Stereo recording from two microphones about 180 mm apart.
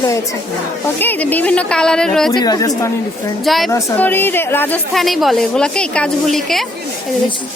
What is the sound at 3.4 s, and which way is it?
Speech, centre (ahead or behind).